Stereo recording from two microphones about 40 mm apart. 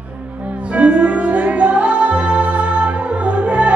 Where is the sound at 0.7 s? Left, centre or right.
Right.